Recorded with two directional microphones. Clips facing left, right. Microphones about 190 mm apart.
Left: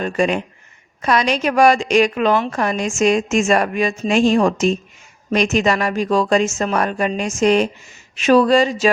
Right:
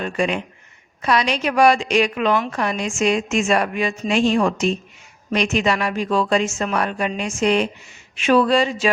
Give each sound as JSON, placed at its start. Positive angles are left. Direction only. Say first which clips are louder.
{"t": 0.0, "sound": "a woman's voice", "louder": "left 3 dB", "side_deg": 45}